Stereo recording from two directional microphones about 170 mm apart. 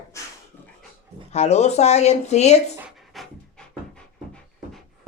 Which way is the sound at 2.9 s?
Centre (ahead or behind).